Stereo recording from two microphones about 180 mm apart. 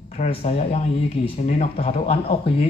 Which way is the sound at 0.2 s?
30° left (ahead or behind).